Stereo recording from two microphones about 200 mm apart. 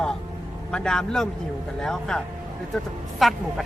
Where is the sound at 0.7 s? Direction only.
5° left (ahead or behind).